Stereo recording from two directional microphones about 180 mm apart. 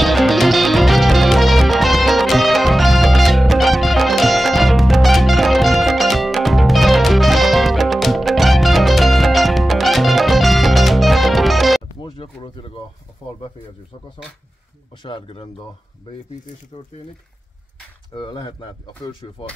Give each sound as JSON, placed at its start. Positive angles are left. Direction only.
{"t": 0.0, "sound": "music", "side_deg": 0}
{"t": 12.0, "sound": "a sound", "side_deg": 30}
{"t": 15.0, "sound": "speech", "side_deg": 30}
{"t": 16.7, "sound": "speech", "side_deg": 35}
{"t": 18.1, "sound": "speech", "side_deg": 25}